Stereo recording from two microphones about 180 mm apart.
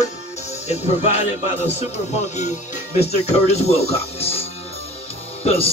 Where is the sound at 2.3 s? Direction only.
40° left (ahead or behind).